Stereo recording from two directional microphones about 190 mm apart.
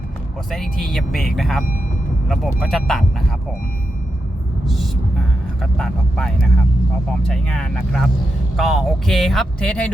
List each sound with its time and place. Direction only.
0.5 s speech: centre (ahead or behind)
4.6 s speech: centre (ahead or behind)